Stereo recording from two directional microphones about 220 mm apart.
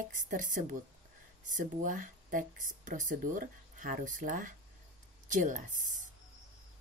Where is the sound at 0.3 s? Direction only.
35° right (ahead or behind).